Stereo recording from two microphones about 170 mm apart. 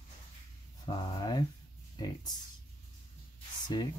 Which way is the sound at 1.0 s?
25° left (ahead or behind).